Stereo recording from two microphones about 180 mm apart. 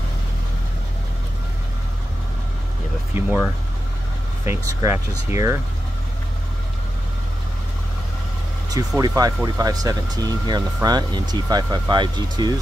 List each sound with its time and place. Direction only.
3.1 s speech: 10° right (ahead or behind)
4.5 s speech: 15° right (ahead or behind)
8.6 s speech: 20° right (ahead or behind)